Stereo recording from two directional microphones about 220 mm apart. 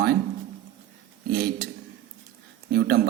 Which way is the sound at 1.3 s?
45° right (ahead or behind).